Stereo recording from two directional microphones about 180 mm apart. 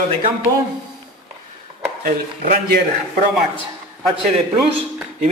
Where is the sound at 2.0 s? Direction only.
55° right (ahead or behind).